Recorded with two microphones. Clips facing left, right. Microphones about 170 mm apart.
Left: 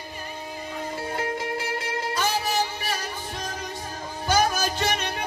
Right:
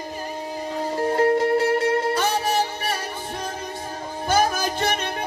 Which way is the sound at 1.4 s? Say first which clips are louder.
Right 11 dB; 60° right (ahead or behind).